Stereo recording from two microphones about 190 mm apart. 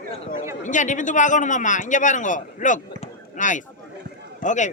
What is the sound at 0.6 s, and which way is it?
A man's voice, 40° left (ahead or behind).